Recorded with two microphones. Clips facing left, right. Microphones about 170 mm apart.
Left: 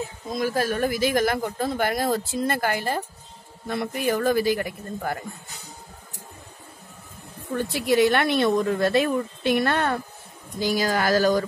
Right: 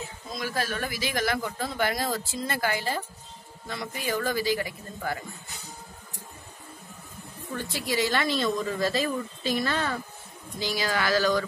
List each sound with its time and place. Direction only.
0.3 s speech: 45° left (ahead or behind)
7.5 s speech: 60° left (ahead or behind)
10.6 s speech: 45° left (ahead or behind)